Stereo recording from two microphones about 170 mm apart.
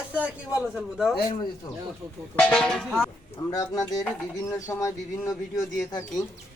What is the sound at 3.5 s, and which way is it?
A man's voice, 20° left (ahead or behind).